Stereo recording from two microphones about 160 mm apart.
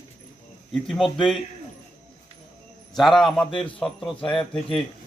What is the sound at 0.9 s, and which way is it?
Speech, centre (ahead or behind).